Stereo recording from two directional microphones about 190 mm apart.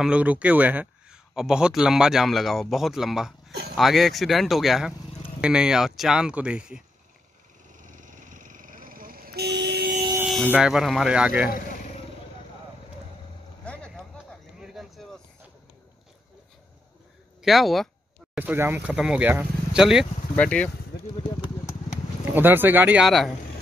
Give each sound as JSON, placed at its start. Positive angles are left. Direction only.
{"t": 0.0, "sound": "speech", "side_deg": -5}
{"t": 7.7, "sound": "vehicle", "side_deg": -40}
{"t": 10.2, "sound": "speech", "side_deg": 0}
{"t": 13.7, "sound": "a sound", "side_deg": 5}
{"t": 17.4, "sound": "speech", "side_deg": 0}
{"t": 22.3, "sound": "speech", "side_deg": -10}